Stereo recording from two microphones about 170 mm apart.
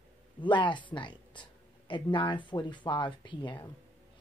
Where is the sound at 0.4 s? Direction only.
30° left (ahead or behind).